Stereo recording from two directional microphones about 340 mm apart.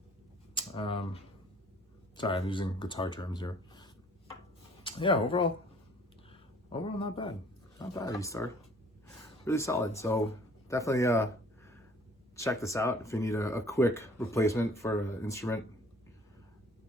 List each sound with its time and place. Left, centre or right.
0.5 s speech: centre
10.7 s a sound: centre
12.4 s speech: centre